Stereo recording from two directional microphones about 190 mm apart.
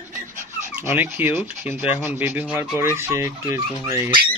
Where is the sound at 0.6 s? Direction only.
10° right (ahead or behind).